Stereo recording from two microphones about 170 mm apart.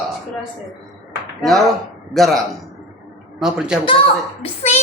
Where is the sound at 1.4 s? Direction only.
Centre (ahead or behind).